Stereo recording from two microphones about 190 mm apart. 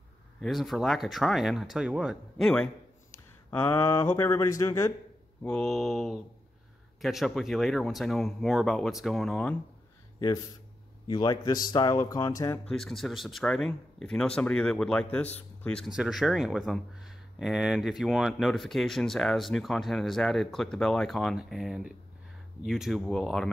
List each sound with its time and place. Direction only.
0.4 s speech: centre (ahead or behind); by 4.9 s 15° left (ahead or behind)
5.4 s speech: 5° left (ahead or behind)
10.1 s speech: 20° left (ahead or behind)
12.6 s speech: centre (ahead or behind)